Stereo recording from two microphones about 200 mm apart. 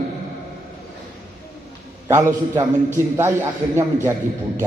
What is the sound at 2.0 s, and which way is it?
Speech, 15° right (ahead or behind).